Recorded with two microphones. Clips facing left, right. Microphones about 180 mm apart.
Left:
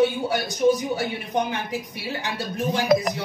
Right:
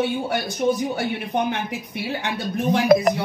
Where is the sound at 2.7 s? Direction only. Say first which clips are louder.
Right 5 dB; 55° right (ahead or behind).